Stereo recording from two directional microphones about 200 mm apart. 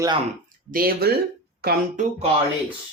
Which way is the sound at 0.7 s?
45° right (ahead or behind).